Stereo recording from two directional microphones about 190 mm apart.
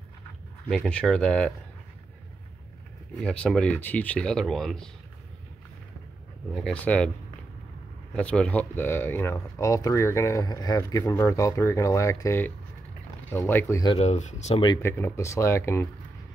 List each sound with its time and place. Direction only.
0.7 s speech: 5° left (ahead or behind)
3.2 s speech: 5° left (ahead or behind)
6.5 s speech: 5° left (ahead or behind)
8.1 s speech: 5° left (ahead or behind)
13.9 s speech: 35° left (ahead or behind)
14.6 s speech: 20° left (ahead or behind)